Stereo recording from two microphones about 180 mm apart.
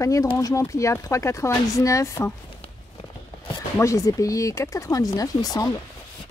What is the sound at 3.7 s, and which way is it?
Speech, 15° left (ahead or behind).